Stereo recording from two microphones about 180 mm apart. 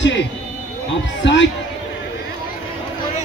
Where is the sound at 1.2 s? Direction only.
80° left.